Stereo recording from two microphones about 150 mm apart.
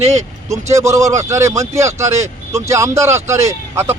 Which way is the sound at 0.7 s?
20° right (ahead or behind).